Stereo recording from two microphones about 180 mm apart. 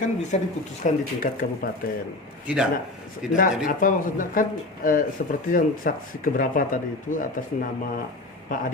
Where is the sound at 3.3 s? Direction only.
50° left (ahead or behind).